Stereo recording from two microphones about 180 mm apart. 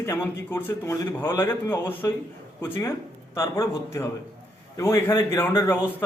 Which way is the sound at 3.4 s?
15° left (ahead or behind).